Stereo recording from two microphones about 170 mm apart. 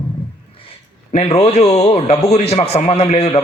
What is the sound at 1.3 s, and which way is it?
A man's voice, 40° left (ahead or behind).